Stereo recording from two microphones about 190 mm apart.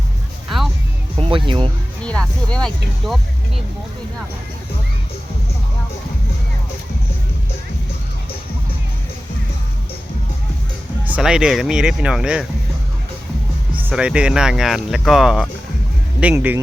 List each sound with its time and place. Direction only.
0.4 s music: centre (ahead or behind)
1.2 s speech: 25° right (ahead or behind)
2.0 s speech: 5° left (ahead or behind)
11.0 s speech: 5° right (ahead or behind)
13.9 s speech: 5° right (ahead or behind)